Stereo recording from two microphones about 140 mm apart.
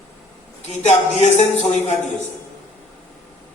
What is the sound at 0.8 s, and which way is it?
A man's voice, 55° left (ahead or behind).